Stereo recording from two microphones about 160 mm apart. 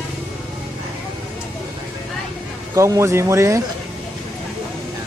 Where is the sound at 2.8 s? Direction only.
15° right (ahead or behind).